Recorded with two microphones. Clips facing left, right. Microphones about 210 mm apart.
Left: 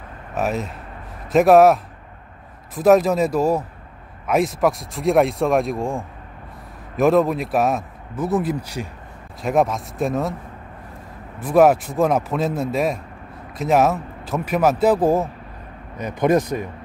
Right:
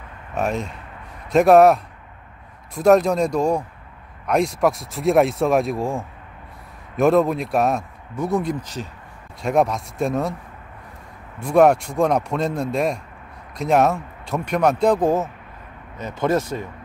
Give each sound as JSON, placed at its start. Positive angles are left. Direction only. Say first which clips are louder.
{"t": 0.3, "sound": "speech", "louder": "even", "side_deg": 5}
{"t": 11.3, "sound": "speech", "louder": "even", "side_deg": 5}